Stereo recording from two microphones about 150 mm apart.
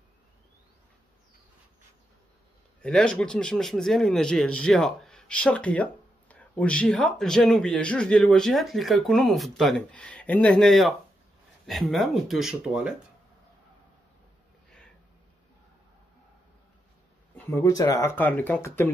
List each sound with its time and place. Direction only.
2.8 s a man's voice: 5° left (ahead or behind)
17.4 s speech: 20° left (ahead or behind)